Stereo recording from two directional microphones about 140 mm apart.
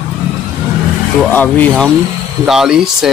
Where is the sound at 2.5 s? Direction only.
5° right (ahead or behind).